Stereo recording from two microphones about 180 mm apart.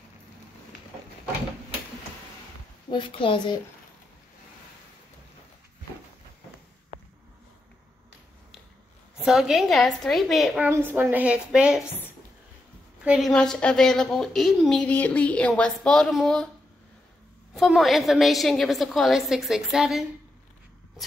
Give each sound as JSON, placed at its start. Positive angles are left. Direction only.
{"t": 2.9, "sound": "a woman's voice", "side_deg": 25}
{"t": 9.2, "sound": "a woman's voice", "side_deg": 0}
{"t": 17.6, "sound": "a woman's voice", "side_deg": 0}